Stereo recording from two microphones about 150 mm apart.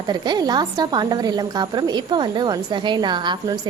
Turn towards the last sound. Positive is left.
turn(degrees=-30)  # may be behind; listen again after turning